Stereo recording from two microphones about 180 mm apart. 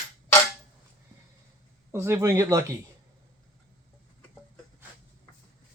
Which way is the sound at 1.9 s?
15° right (ahead or behind).